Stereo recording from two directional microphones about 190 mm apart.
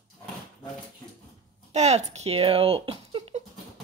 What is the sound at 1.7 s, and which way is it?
Speech, 35° right (ahead or behind).